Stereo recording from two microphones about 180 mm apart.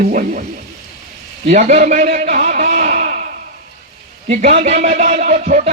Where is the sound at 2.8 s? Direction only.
45° right (ahead or behind).